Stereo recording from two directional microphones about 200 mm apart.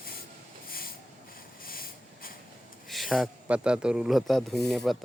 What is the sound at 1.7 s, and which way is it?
Hiss, 45° left (ahead or behind).